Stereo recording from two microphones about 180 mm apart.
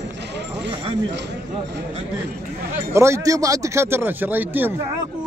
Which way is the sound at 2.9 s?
15° right (ahead or behind).